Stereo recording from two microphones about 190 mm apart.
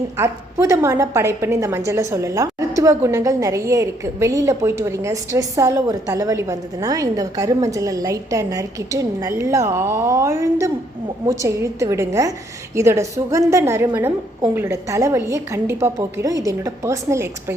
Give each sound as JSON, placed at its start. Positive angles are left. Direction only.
{"t": 0.2, "sound": "a woman's voice", "side_deg": -15}